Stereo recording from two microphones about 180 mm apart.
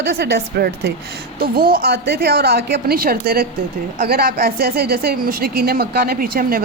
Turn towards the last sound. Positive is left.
turn(degrees=-55)  # may be behind; listen again after turning